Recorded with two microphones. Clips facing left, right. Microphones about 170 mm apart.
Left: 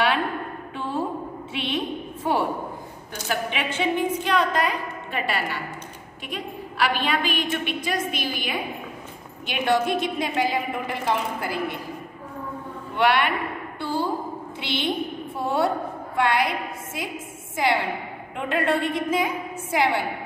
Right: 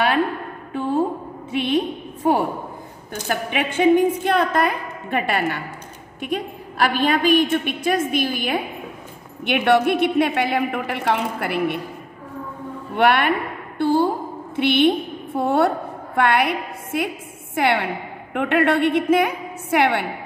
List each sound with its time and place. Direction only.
0.7 s a sound: 45° right (ahead or behind)
2.2 s a woman's voice: 45° right (ahead or behind)
9.5 s a woman's voice: 65° right (ahead or behind)
12.9 s a woman's voice: 55° right (ahead or behind); by 20.1 s 70° right (ahead or behind)